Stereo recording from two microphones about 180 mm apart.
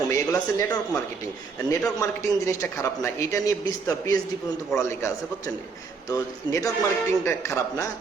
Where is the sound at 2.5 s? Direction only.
15° left (ahead or behind).